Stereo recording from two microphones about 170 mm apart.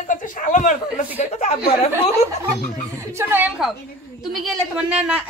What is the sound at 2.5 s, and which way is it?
A woman's voice, 15° right (ahead or behind).